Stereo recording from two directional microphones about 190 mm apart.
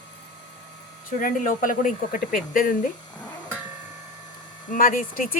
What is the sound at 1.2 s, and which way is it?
Speech, 45° left (ahead or behind).